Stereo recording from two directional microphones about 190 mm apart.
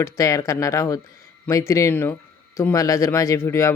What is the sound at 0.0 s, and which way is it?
Speech, 15° left (ahead or behind).